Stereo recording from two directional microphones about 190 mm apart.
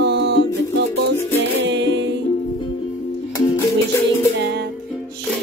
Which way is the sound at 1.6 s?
65° right (ahead or behind).